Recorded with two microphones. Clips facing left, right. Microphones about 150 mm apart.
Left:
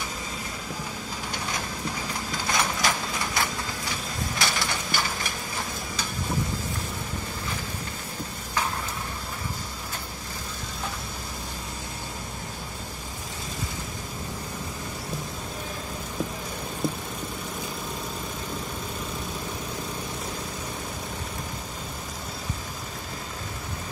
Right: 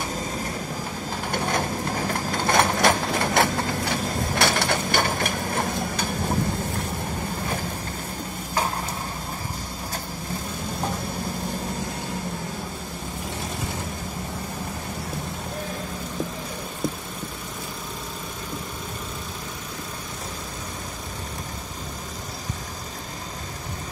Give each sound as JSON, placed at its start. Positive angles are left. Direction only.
{"t": 1.3, "sound": "sewing machine", "side_deg": -55}